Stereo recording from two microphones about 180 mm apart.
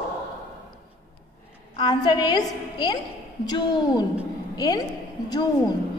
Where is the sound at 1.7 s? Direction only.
25° left (ahead or behind).